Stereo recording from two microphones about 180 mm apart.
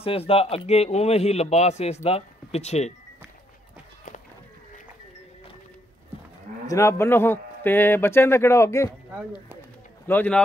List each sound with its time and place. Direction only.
0.0 s speech: 30° left (ahead or behind)
6.7 s a man's voice: 15° left (ahead or behind)